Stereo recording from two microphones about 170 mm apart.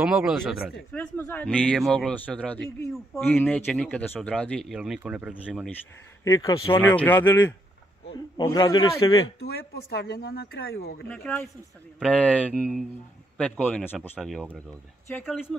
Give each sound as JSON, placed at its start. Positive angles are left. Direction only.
{"t": 0.0, "sound": "speech", "side_deg": -5}
{"t": 0.9, "sound": "a man's voice", "side_deg": 10}
{"t": 6.2, "sound": "a man's voice", "side_deg": 20}
{"t": 8.1, "sound": "a man's voice", "side_deg": 25}
{"t": 9.4, "sound": "speech", "side_deg": 70}
{"t": 11.1, "sound": "a man's voice", "side_deg": 10}